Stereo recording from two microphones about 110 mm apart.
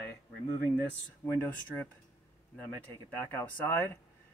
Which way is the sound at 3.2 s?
20° left (ahead or behind).